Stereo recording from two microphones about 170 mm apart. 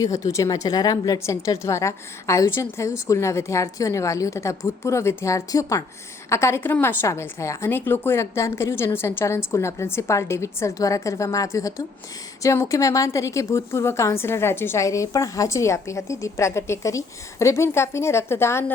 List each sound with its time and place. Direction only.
0.0 s a woman's voice: 20° left (ahead or behind)